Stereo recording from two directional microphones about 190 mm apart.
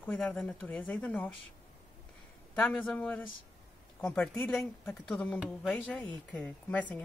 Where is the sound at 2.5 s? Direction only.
5° left (ahead or behind).